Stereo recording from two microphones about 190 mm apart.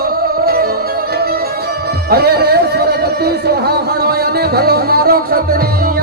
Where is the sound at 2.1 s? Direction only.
55° right (ahead or behind).